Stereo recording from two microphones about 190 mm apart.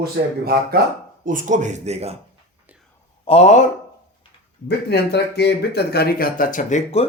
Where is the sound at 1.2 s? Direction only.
40° right (ahead or behind).